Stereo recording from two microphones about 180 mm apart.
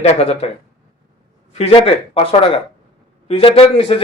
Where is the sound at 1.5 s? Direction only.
35° left (ahead or behind).